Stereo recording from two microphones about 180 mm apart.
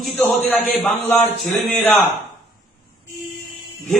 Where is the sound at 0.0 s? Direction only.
10° left (ahead or behind).